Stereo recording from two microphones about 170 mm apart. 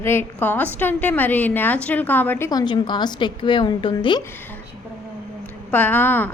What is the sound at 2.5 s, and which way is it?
A woman's voice, 25° left (ahead or behind).